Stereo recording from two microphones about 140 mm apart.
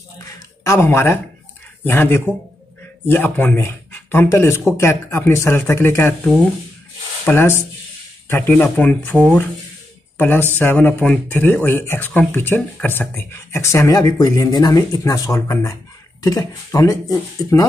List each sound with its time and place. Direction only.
0.7 s speech: 15° left (ahead or behind)
7.2 s speech: 15° left (ahead or behind)